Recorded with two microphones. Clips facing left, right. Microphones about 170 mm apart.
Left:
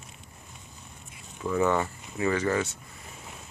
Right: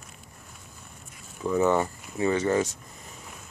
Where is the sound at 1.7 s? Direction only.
5° right (ahead or behind).